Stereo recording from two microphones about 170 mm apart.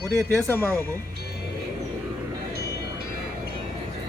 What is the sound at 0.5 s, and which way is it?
Speech, 15° left (ahead or behind).